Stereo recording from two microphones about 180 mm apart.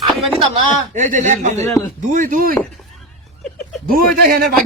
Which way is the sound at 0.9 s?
45° right (ahead or behind).